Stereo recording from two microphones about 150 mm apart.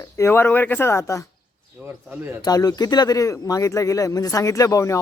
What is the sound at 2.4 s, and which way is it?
Speech, 25° left (ahead or behind).